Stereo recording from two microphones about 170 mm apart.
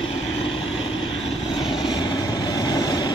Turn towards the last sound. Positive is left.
turn(degrees=25)  # may be behind; listen again after turning